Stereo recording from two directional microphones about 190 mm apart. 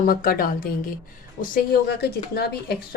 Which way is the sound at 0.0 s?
50° left (ahead or behind).